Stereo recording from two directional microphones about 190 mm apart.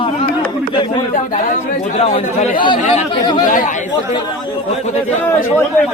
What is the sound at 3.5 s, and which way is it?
Speech, 40° left (ahead or behind).